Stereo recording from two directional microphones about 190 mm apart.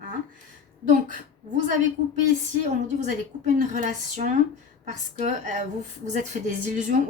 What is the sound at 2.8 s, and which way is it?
A woman's voice, 40° right (ahead or behind).